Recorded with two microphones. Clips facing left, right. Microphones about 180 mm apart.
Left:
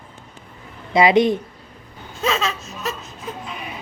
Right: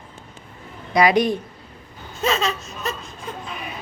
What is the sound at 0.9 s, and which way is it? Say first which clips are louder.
Speech: left 2 dB; 25° left (ahead or behind).